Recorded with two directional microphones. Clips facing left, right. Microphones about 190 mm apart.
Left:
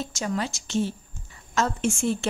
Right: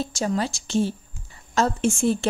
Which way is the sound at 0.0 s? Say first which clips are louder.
Right 4 dB; 35° right (ahead or behind).